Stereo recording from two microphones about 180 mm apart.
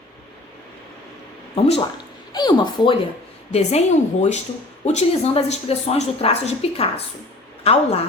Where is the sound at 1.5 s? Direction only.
35° left (ahead or behind).